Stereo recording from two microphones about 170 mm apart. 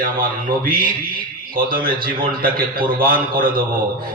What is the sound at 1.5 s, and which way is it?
A man's voice, 60° right (ahead or behind).